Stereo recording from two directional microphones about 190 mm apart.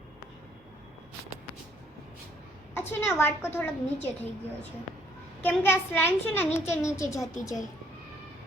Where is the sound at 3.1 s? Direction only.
10° left (ahead or behind).